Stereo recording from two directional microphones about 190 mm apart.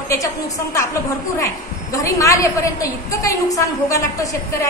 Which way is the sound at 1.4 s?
15° left (ahead or behind).